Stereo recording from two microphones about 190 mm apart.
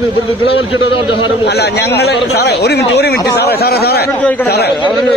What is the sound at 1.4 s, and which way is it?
Speech, 60° left (ahead or behind).